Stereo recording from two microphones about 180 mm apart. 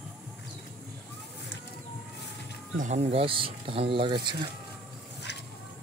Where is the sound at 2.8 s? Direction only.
40° right (ahead or behind).